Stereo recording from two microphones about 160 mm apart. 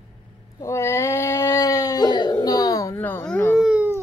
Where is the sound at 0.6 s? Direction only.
15° left (ahead or behind).